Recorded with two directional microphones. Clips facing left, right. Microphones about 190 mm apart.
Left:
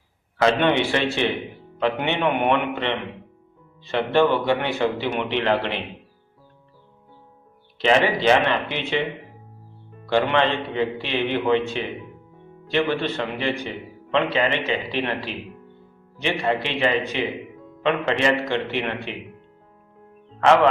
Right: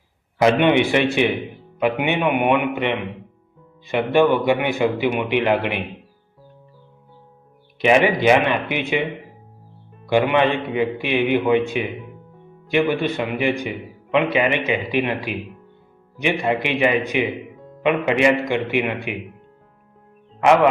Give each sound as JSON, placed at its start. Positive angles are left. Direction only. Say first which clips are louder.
{"t": 0.3, "sound": "a man's voice", "louder": "right 3 dB", "side_deg": -15}
{"t": 7.8, "sound": "a man's voice", "louder": "right 3 dB", "side_deg": -15}
{"t": 10.1, "sound": "a man's voice", "louder": "right 3 dB", "side_deg": -15}
{"t": 20.4, "sound": "a man's voice", "louder": "right 2 dB", "side_deg": -15}